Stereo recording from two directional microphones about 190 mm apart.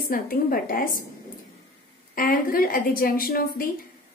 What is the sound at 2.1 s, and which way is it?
A woman's voice, 45° left (ahead or behind).